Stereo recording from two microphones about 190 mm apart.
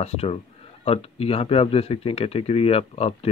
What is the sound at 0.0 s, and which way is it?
Speech, 35° left (ahead or behind).